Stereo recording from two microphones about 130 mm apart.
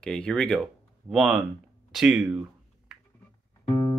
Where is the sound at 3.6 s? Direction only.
30° left (ahead or behind).